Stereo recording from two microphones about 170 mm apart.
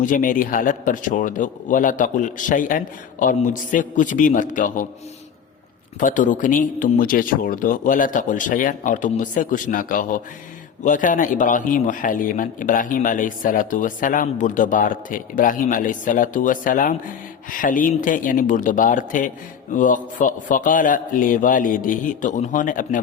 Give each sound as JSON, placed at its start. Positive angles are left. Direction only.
{"t": 0.0, "sound": "a man's voice", "side_deg": 50}
{"t": 6.0, "sound": "a man's voice", "side_deg": 50}